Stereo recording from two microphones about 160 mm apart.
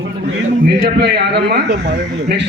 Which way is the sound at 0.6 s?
65° right (ahead or behind).